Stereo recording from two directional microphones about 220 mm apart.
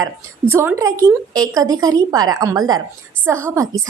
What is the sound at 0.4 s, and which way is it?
A woman's voice, 10° right (ahead or behind).